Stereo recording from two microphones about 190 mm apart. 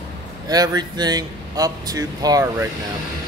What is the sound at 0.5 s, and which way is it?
Speech, 20° right (ahead or behind).